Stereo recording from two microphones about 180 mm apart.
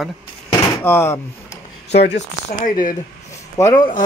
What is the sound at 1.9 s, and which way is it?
Speech, 70° left (ahead or behind).